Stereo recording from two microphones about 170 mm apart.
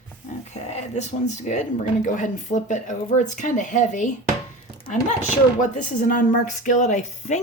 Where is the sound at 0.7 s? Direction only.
45° left (ahead or behind).